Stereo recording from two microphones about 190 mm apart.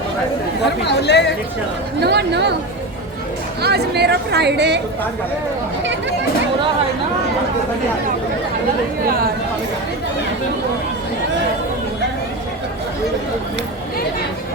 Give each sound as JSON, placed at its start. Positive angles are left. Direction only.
{"t": 0.6, "sound": "chatter", "side_deg": 60}
{"t": 2.0, "sound": "speech", "side_deg": -60}
{"t": 3.6, "sound": "speech", "side_deg": -60}